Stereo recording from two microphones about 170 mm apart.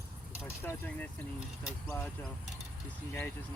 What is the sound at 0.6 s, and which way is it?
Speech, 10° left (ahead or behind).